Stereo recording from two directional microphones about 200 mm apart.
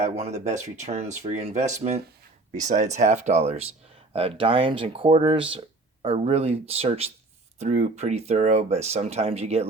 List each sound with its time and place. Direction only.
0.0 s speech: 35° right (ahead or behind)